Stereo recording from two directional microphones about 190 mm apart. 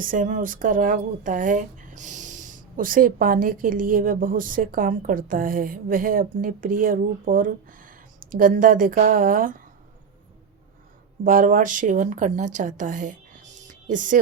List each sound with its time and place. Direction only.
0.0 s speech: 45° right (ahead or behind)
11.2 s speech: 45° right (ahead or behind)